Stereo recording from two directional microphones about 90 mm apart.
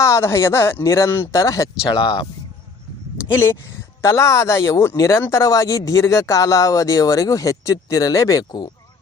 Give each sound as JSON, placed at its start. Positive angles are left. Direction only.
{"t": 0.0, "sound": "speech", "side_deg": 30}
{"t": 1.9, "sound": "speech", "side_deg": 70}
{"t": 3.2, "sound": "speech", "side_deg": 25}